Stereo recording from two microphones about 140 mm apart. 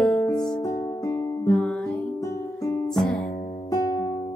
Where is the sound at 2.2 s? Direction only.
25° left (ahead or behind).